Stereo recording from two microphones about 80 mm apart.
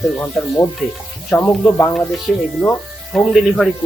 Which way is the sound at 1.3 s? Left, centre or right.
Left.